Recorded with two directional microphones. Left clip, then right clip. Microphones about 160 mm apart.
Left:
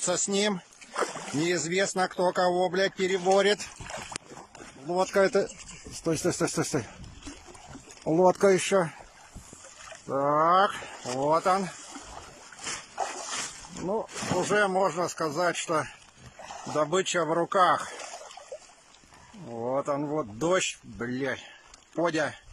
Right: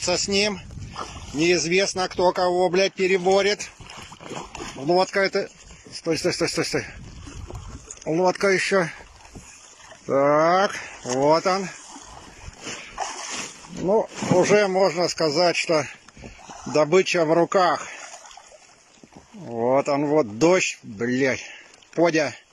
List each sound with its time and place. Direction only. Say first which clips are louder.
0.0 s speech: right 5 dB; centre (ahead or behind)
3.8 s a sound: left 1 dB; 5° right (ahead or behind)
4.8 s speech: right 4 dB; 15° left (ahead or behind)
8.1 s speech: right 1 dB; 20° left (ahead or behind)
10.0 s speech: right 6 dB; 5° right (ahead or behind)
12.7 s dog: right 3 dB; centre (ahead or behind)
14.4 s speech: right 6 dB; 5° right (ahead or behind)
19.9 s speech: right 9 dB; 5° right (ahead or behind)